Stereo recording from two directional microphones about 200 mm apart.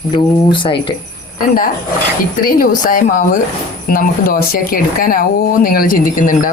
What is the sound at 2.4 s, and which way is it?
Speech, 45° left (ahead or behind).